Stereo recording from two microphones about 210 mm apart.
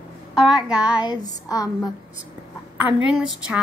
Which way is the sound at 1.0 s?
15° left (ahead or behind).